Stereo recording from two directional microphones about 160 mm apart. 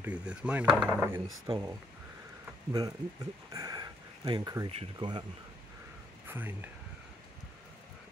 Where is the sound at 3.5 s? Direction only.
20° right (ahead or behind).